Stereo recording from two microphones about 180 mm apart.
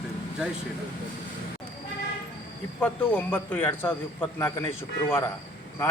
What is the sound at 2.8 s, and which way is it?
A man's voice, 10° left (ahead or behind).